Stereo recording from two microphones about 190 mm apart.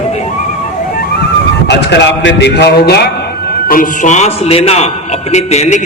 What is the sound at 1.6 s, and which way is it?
A man's voice, 65° left (ahead or behind).